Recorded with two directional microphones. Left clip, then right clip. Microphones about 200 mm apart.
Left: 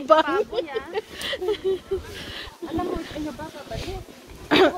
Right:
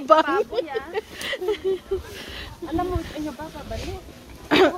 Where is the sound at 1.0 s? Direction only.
Centre (ahead or behind).